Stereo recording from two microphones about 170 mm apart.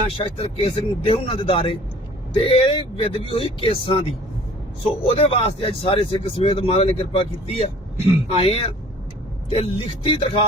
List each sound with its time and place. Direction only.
0.2 s speech: 35° left (ahead or behind)
5.0 s speech: 35° left (ahead or behind)